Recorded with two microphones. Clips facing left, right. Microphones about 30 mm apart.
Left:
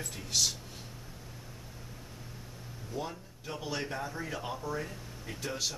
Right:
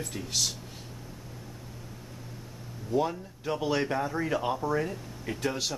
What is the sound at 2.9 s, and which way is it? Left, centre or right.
Speech, right.